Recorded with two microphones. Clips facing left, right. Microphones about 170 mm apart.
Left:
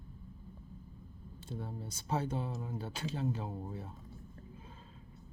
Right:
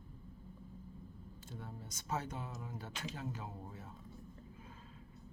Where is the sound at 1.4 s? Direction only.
30° left (ahead or behind).